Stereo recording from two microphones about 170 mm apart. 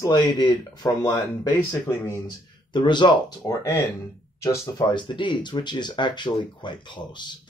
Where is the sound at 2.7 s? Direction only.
25° left (ahead or behind).